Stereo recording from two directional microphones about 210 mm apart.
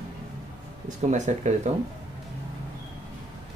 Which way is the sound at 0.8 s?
35° right (ahead or behind).